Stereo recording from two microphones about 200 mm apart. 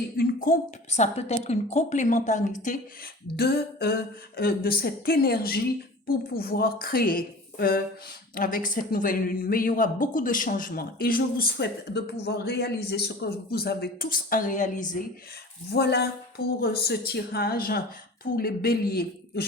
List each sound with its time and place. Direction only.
0.2 s a woman's voice: 40° left (ahead or behind)
3.3 s speech: 50° left (ahead or behind)
15.7 s speech: 55° left (ahead or behind)